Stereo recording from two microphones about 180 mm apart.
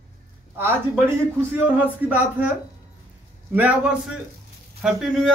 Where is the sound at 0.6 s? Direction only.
10° right (ahead or behind).